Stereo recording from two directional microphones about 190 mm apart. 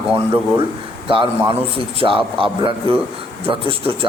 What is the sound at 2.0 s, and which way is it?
Speech, 25° right (ahead or behind).